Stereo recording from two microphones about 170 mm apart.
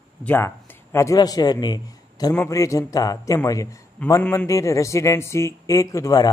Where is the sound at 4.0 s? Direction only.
10° left (ahead or behind).